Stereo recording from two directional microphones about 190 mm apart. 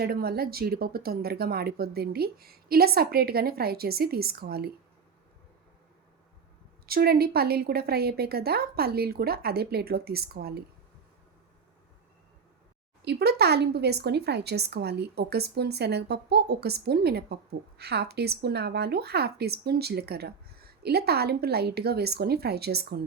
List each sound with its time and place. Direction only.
0.0 s speech: 55° right (ahead or behind)
6.8 s speech: 55° right (ahead or behind)
13.0 s speech: 60° right (ahead or behind)